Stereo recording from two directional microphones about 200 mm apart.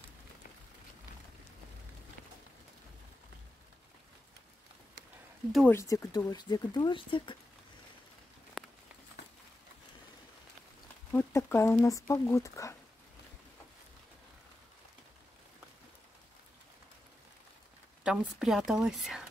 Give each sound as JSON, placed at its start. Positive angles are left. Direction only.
{"t": 5.7, "sound": "speech", "side_deg": 15}
{"t": 8.6, "sound": "a sound", "side_deg": 0}
{"t": 11.1, "sound": "speech", "side_deg": 10}
{"t": 18.0, "sound": "a woman's voice", "side_deg": 0}